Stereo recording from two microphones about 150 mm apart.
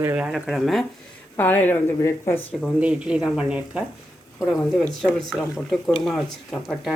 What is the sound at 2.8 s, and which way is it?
Speech, 5° right (ahead or behind).